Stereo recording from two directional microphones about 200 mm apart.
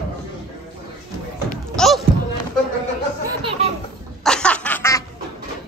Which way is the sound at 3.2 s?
25° right (ahead or behind).